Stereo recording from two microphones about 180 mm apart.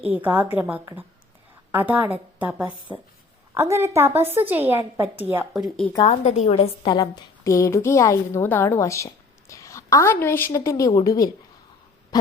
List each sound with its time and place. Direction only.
0.0 s a woman's voice: 10° right (ahead or behind)
5.6 s speech: 5° left (ahead or behind)
6.1 s a woman's voice: 35° left (ahead or behind); by 11.3 s 20° left (ahead or behind)